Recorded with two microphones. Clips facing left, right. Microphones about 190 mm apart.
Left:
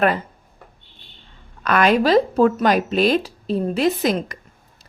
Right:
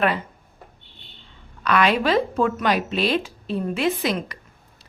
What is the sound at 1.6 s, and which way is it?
A woman's voice, 45° left (ahead or behind).